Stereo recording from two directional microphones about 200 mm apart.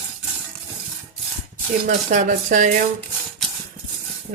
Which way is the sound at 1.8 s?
40° right (ahead or behind).